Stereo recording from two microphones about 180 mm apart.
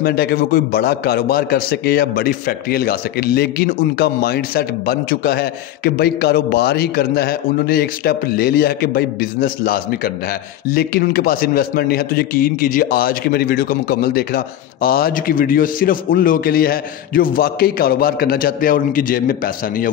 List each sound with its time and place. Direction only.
0.0 s a man's voice: 60° left (ahead or behind)